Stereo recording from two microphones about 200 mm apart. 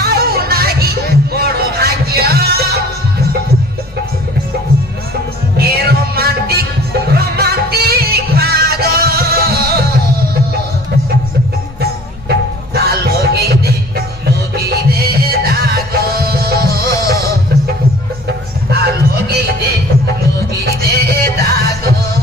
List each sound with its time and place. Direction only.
0.0 s music: 50° right (ahead or behind)
5.6 s music: 50° right (ahead or behind)
12.3 s music: 50° right (ahead or behind)
18.7 s music: 50° right (ahead or behind)
20.6 s music: 50° right (ahead or behind)